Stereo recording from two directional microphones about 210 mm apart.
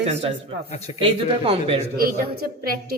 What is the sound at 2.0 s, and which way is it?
Speech, 45° right (ahead or behind).